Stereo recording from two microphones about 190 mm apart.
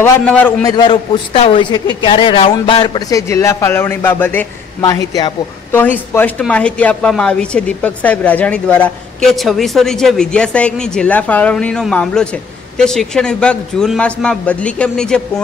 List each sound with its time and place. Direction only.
0.0 s speech: 5° left (ahead or behind)
0.7 s a man's voice: 25° left (ahead or behind); by 15.4 s 5° left (ahead or behind)